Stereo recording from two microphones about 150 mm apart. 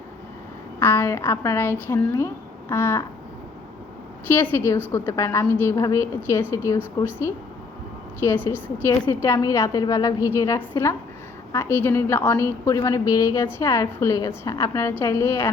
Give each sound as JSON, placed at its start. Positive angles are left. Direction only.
{"t": 0.8, "sound": "a woman's voice", "side_deg": 15}
{"t": 4.3, "sound": "a woman's voice", "side_deg": 15}